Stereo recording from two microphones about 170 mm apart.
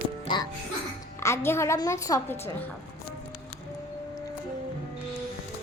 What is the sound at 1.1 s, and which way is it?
A woman's voice, 15° left (ahead or behind).